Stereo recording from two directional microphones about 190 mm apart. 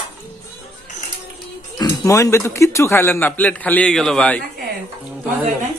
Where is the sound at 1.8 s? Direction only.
15° left (ahead or behind).